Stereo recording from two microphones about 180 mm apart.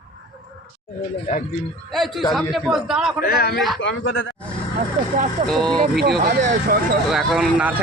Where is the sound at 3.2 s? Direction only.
60° left (ahead or behind).